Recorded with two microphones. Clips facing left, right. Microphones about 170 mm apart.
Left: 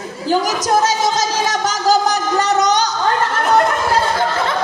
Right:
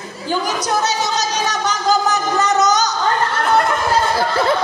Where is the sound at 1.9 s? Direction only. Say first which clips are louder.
Left 2 dB; 35° left (ahead or behind).